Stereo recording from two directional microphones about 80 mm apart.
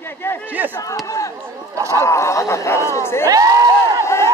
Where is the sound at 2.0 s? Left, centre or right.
Left.